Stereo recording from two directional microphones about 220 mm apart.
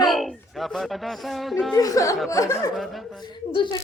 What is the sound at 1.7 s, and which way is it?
A woman's voice, 15° left (ahead or behind).